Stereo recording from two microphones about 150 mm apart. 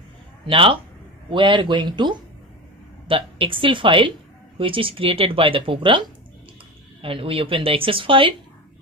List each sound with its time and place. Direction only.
0.5 s speech: 35° right (ahead or behind)